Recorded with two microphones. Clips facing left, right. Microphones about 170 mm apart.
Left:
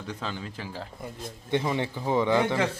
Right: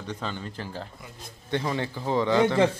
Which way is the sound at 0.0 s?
5° left (ahead or behind).